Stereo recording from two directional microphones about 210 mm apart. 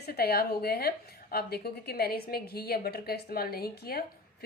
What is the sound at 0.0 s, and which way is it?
A woman's voice, 50° left (ahead or behind).